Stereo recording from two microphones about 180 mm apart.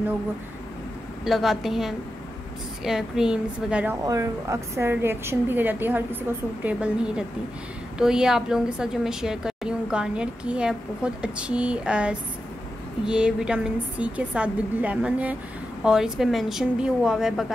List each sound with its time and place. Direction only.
1.2 s a woman's voice: centre (ahead or behind)
4.0 s a woman's voice: 20° right (ahead or behind); by 17.5 s 5° right (ahead or behind)